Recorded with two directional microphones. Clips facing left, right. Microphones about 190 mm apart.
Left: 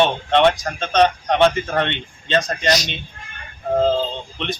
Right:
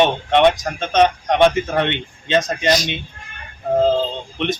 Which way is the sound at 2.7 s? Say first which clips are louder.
Right 2 dB; 50° right (ahead or behind).